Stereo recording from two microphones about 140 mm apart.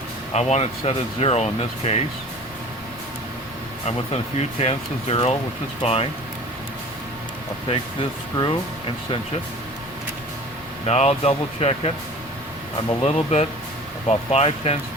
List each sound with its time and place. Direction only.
0.3 s speech: 50° left (ahead or behind)
3.8 s speech: 50° left (ahead or behind)
10.8 s speech: 50° left (ahead or behind)
12.9 s speech: 45° left (ahead or behind)